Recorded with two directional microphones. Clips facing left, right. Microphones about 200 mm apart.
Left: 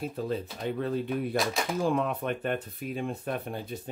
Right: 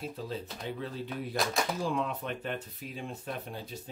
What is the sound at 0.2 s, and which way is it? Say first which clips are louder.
Speech: left 6 dB; 55° left (ahead or behind).